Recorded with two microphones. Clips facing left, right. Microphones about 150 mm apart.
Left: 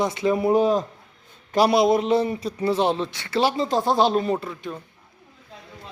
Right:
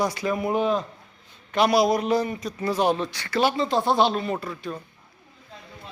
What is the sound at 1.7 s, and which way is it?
A man's voice, 25° left (ahead or behind).